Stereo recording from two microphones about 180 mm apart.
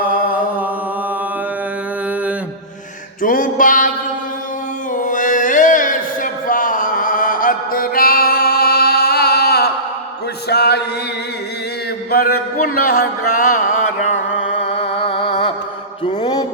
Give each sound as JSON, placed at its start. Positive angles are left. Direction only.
{"t": 0.0, "sound": "chant", "side_deg": -10}
{"t": 3.2, "sound": "a sound", "side_deg": 50}
{"t": 4.9, "sound": "music", "side_deg": 45}
{"t": 6.5, "sound": "mantra", "side_deg": 50}
{"t": 10.5, "sound": "chant", "side_deg": 65}
{"t": 12.1, "sound": "music", "side_deg": 55}
{"t": 14.7, "sound": "music", "side_deg": 30}
{"t": 16.0, "sound": "mantra", "side_deg": 25}